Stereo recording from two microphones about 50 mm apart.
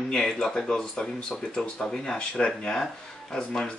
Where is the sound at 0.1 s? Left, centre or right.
Centre.